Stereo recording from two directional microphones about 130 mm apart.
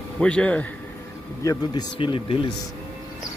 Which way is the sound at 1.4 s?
35° left (ahead or behind).